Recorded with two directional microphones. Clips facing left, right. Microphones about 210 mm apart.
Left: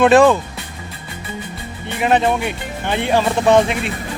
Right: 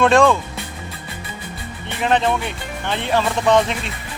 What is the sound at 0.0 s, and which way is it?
Speech, 5° left (ahead or behind).